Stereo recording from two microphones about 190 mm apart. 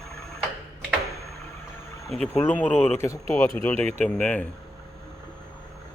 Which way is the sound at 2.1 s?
10° left (ahead or behind).